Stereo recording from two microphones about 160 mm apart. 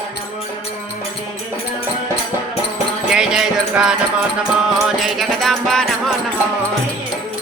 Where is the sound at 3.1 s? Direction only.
5° right (ahead or behind).